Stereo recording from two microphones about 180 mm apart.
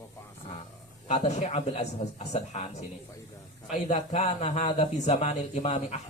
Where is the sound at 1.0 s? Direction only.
40° left (ahead or behind).